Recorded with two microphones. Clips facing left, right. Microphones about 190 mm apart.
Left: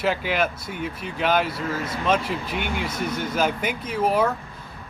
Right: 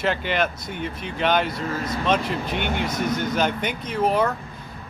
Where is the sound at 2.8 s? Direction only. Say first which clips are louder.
Right 3 dB; 45° right (ahead or behind).